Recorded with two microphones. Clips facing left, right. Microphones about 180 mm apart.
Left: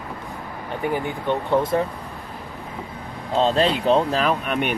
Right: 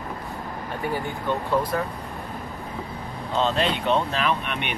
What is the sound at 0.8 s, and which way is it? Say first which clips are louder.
Speech: left 4 dB; 20° left (ahead or behind).